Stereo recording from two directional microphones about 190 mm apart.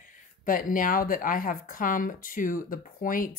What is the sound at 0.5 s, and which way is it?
Speech, 45° left (ahead or behind).